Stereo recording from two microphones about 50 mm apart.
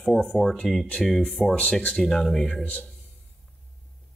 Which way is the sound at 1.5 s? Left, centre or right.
Centre.